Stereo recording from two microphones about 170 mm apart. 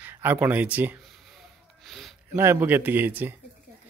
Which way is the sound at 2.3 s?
10° right (ahead or behind).